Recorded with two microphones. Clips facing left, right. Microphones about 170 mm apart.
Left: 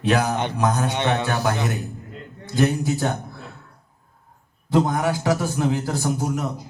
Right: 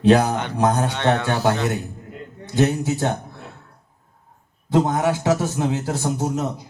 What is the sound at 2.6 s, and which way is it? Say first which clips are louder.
Speech: right 1 dB; 25° right (ahead or behind).